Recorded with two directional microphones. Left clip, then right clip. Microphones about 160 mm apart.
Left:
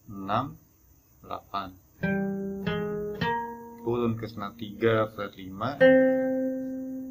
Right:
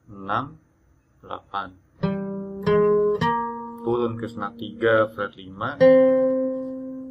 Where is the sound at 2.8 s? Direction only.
40° right (ahead or behind).